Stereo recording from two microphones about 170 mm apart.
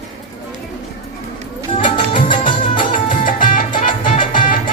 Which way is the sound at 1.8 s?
30° left (ahead or behind).